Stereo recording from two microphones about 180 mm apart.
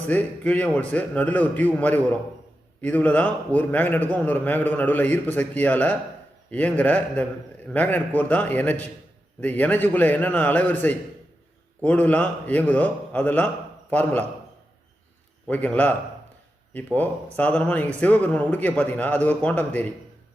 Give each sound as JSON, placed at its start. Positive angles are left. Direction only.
{"t": 0.1, "sound": "a man's voice", "side_deg": 10}
{"t": 15.4, "sound": "a man's voice", "side_deg": 10}